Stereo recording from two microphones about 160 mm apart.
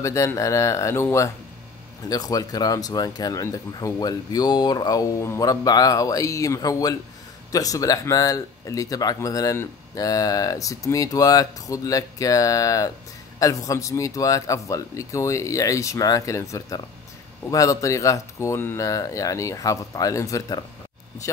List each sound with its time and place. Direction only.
0.0 s speech: 20° left (ahead or behind)